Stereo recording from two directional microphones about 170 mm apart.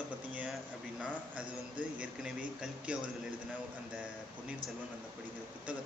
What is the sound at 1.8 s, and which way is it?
A man's voice, 5° right (ahead or behind).